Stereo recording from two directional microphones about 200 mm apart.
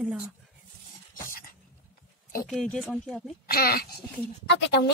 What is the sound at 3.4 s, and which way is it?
Speech, 50° left (ahead or behind).